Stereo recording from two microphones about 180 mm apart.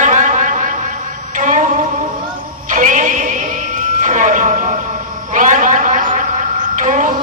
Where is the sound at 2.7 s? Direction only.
45° right (ahead or behind).